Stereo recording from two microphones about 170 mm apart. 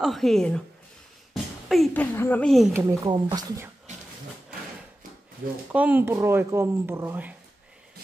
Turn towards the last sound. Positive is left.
turn(degrees=-10)  # may be behind; listen again after turning